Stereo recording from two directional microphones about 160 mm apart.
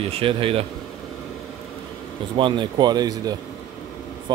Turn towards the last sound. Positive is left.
turn(degrees=-25)  # may be behind; listen again after turning